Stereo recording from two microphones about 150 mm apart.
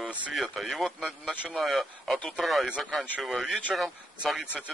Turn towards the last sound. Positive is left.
turn(degrees=-5)  # may be behind; listen again after turning